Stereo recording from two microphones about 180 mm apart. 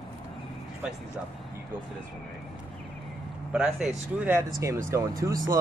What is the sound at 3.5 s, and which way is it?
Speech, 5° right (ahead or behind).